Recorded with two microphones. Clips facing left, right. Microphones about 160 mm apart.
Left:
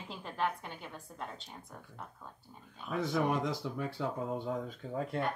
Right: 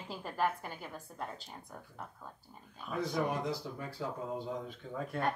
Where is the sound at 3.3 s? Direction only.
85° left.